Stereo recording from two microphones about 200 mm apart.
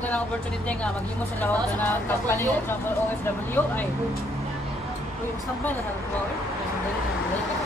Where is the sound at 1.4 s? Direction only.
10° left (ahead or behind).